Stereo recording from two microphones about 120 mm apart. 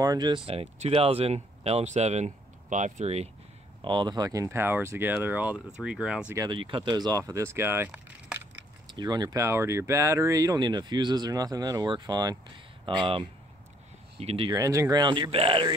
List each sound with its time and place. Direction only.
0.0 s speech: 35° right (ahead or behind)
0.7 s speech: 65° right (ahead or behind)
3.8 s speech: 40° right (ahead or behind); by 6.3 s 10° right (ahead or behind)
6.5 s speech: 45° right (ahead or behind); by 8.4 s 15° right (ahead or behind)
8.9 s speech: 35° right (ahead or behind)
14.1 s speech: 50° right (ahead or behind)
14.5 s speech: 25° right (ahead or behind); by 15.7 s 45° right (ahead or behind)